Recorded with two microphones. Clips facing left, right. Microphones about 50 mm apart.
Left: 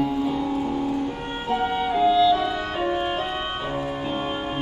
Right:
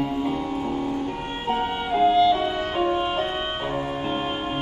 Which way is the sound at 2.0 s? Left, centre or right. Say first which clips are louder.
Right 1 dB; right.